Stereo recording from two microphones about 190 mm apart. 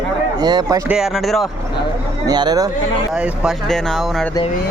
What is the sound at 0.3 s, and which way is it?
Speech, 20° right (ahead or behind).